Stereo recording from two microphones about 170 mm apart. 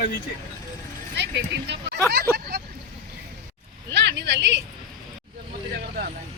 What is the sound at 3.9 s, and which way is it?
Vehicle, 90° right.